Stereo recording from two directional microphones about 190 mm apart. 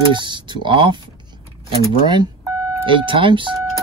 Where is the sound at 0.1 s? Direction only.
25° right (ahead or behind).